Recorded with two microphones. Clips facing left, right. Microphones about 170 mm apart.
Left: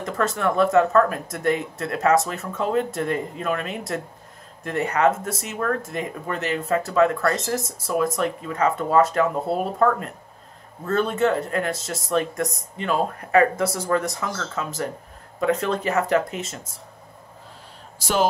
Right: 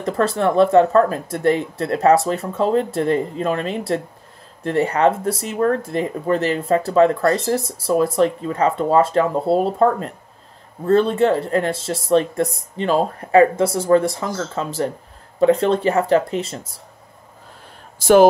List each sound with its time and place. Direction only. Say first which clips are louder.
0.0 s speech: right 5 dB; 35° right (ahead or behind)
17.9 s speech: right 11 dB; 50° right (ahead or behind)